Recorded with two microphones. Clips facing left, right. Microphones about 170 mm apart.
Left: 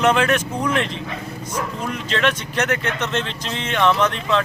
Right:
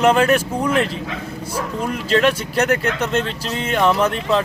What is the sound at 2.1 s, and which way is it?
Speech, 40° right (ahead or behind).